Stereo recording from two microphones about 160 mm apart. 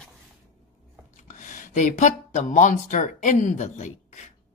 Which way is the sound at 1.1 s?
50° left (ahead or behind).